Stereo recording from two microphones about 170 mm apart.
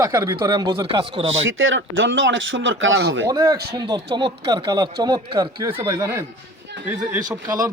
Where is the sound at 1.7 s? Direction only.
90° right.